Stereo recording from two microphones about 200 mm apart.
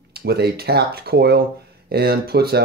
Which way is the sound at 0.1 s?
55° right (ahead or behind).